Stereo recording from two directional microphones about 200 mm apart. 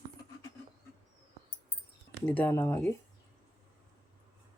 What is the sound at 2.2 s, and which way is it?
Speech, 10° left (ahead or behind).